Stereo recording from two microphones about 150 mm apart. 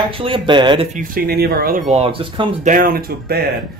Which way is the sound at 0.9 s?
80° right.